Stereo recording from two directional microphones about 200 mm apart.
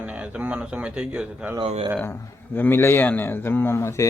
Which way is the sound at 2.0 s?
10° left (ahead or behind).